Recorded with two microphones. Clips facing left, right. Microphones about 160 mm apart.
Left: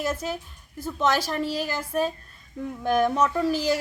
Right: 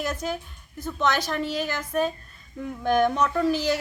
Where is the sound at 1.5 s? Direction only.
35° left (ahead or behind).